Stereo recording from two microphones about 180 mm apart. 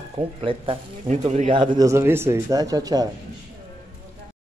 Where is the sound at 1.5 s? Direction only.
25° right (ahead or behind).